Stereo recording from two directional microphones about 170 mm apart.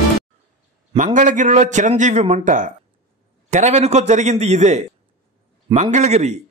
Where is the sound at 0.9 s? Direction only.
50° right (ahead or behind).